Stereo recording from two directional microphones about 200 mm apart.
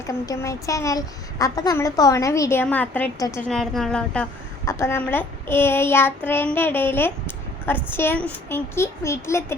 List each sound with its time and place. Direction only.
0.1 s a woman's voice: 15° left (ahead or behind)
3.4 s a woman's voice: centre (ahead or behind)